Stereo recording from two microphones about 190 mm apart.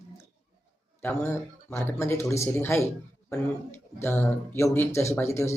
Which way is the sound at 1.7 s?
15° left (ahead or behind).